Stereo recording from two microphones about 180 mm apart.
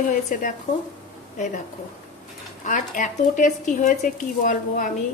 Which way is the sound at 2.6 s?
45° left (ahead or behind).